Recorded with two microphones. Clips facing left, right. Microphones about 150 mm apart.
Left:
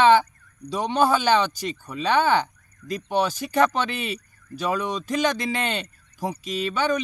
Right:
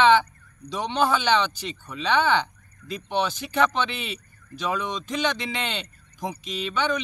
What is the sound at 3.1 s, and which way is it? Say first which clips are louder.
Speech: left 2 dB; 10° left (ahead or behind).